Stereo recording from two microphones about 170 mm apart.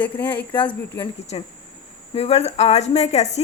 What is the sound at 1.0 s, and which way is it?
A woman's voice, 35° left (ahead or behind).